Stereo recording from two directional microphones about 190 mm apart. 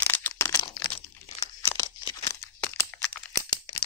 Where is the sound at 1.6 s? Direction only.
20° left (ahead or behind).